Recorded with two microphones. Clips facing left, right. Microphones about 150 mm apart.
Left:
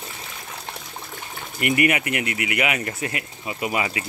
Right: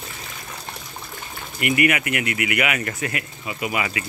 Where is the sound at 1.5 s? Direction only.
35° left (ahead or behind).